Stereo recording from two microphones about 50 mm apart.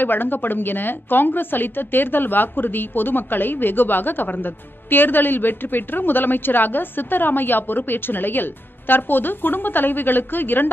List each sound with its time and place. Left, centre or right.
0.0 s a woman's voice: left